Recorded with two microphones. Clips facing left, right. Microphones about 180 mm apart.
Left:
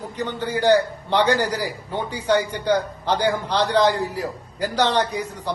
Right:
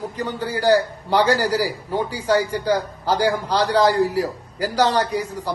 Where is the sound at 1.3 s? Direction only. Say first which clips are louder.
Right 2 dB; 35° right (ahead or behind).